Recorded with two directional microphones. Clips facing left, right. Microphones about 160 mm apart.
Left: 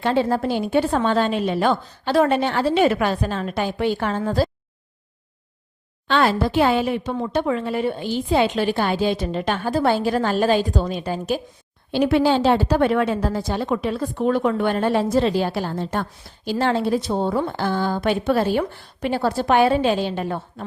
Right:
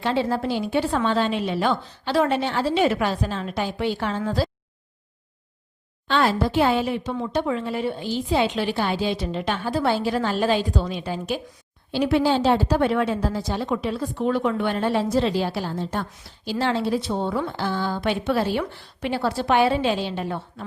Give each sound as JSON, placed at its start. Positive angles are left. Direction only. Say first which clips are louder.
{"t": 0.0, "sound": "a woman's voice", "louder": "left 3 dB", "side_deg": 50}
{"t": 6.1, "sound": "a woman's voice", "louder": "left 2 dB", "side_deg": 65}
{"t": 11.9, "sound": "a woman's voice", "louder": "left 3 dB", "side_deg": 60}